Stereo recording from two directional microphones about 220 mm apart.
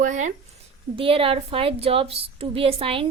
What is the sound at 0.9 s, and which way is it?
A woman's voice, 25° right (ahead or behind).